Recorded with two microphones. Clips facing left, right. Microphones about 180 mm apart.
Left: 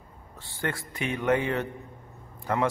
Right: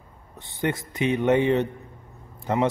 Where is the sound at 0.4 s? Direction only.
20° right (ahead or behind).